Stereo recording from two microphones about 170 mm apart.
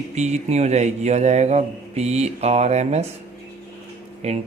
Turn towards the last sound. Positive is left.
turn(degrees=-40)  # may be behind; listen again after turning